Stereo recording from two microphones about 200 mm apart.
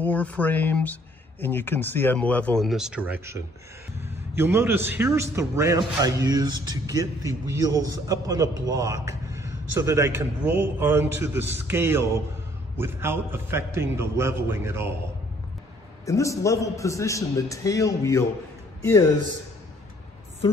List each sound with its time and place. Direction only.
0.0 s a man's voice: 10° left (ahead or behind); by 15.0 s 10° right (ahead or behind)
16.1 s a man's voice: 15° left (ahead or behind)